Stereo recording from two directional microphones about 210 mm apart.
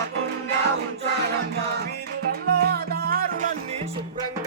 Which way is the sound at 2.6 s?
50° right (ahead or behind).